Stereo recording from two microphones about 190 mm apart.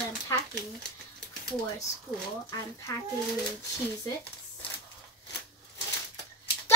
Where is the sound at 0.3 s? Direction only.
15° left (ahead or behind).